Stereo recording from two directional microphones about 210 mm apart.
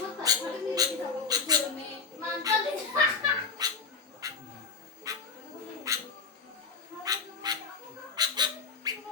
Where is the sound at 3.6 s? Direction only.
20° right (ahead or behind).